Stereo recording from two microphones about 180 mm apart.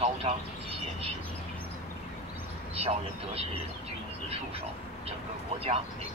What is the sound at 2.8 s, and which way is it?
Speech, 35° right (ahead or behind).